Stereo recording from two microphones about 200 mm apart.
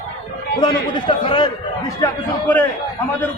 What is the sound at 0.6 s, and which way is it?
A man's voice, 20° left (ahead or behind).